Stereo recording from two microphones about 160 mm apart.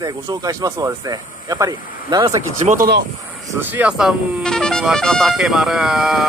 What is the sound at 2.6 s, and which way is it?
Speech, 50° right (ahead or behind).